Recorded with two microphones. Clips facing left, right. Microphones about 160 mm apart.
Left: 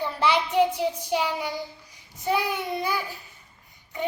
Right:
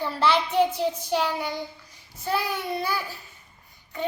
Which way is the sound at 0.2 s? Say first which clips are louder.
Even; 10° left (ahead or behind).